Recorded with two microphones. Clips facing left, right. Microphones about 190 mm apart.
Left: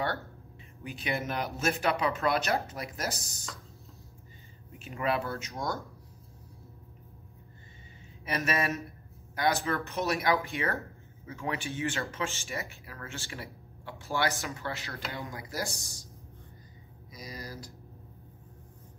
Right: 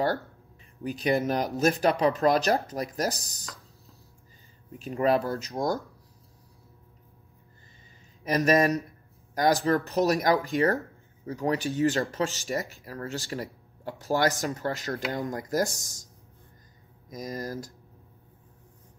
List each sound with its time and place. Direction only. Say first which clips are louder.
0.8 s speech: right 8 dB; 40° right (ahead or behind)
4.7 s speech: right 7 dB; 35° right (ahead or behind)
8.2 s speech: right 9 dB; 40° right (ahead or behind)
17.1 s speech: right 9 dB; 45° right (ahead or behind)